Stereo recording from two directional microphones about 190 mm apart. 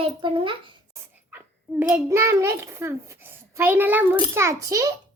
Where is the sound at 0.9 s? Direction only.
10° right (ahead or behind).